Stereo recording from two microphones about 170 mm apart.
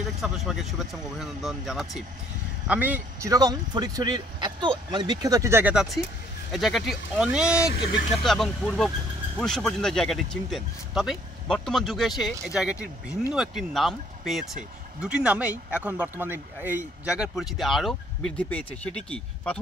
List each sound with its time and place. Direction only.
0.2 s speech: centre (ahead or behind)